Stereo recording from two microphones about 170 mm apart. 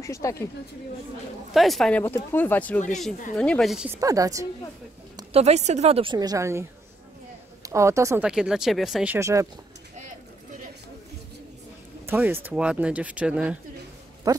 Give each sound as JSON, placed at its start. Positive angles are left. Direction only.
{"t": 0.0, "sound": "speech", "side_deg": 20}
{"t": 1.5, "sound": "speech", "side_deg": 0}
{"t": 3.9, "sound": "a woman's voice", "side_deg": -20}
{"t": 5.3, "sound": "speech", "side_deg": -40}
{"t": 6.1, "sound": "a woman's voice", "side_deg": -20}
{"t": 7.6, "sound": "speech", "side_deg": -15}
{"t": 8.3, "sound": "speech", "side_deg": -5}
{"t": 12.1, "sound": "speech", "side_deg": -10}
{"t": 14.3, "sound": "a sound", "side_deg": -20}